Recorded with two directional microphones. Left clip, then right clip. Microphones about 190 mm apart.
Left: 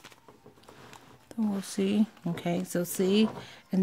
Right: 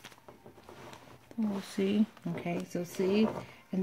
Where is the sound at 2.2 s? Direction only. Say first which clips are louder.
Left 4 dB; 50° left (ahead or behind).